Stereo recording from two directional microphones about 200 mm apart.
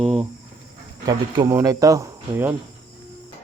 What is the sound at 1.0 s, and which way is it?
Speech, 15° right (ahead or behind).